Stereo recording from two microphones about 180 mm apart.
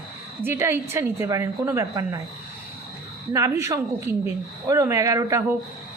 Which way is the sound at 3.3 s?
15° right (ahead or behind).